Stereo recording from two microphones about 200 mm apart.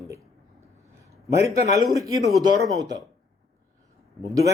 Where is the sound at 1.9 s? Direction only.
15° right (ahead or behind).